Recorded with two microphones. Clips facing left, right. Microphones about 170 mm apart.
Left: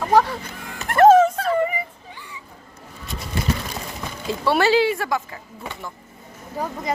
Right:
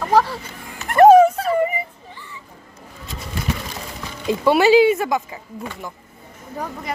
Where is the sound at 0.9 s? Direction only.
15° right (ahead or behind).